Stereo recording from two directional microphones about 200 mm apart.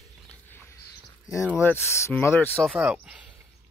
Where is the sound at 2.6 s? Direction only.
5° right (ahead or behind).